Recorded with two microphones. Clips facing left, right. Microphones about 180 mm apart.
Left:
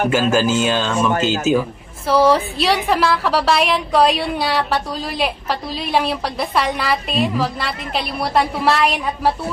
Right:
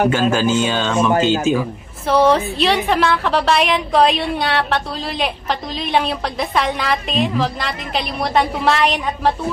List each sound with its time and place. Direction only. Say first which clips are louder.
0.1 s a woman's voice: even; 5° left (ahead or behind)